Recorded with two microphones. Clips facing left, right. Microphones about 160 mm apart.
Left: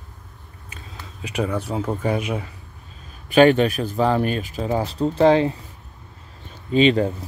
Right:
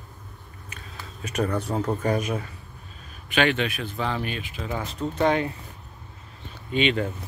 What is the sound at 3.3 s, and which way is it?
Speech, 40° left (ahead or behind).